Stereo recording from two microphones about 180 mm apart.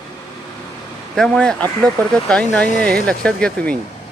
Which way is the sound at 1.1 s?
Centre (ahead or behind).